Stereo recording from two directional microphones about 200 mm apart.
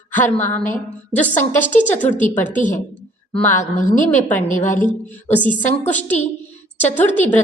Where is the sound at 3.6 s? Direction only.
40° left (ahead or behind).